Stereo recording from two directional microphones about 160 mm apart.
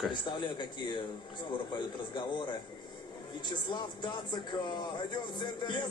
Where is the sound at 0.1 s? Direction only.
30° left (ahead or behind).